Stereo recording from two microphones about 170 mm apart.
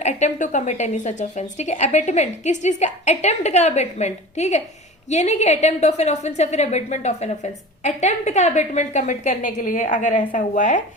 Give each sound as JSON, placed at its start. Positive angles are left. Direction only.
{"t": 0.0, "sound": "a woman's voice", "side_deg": 45}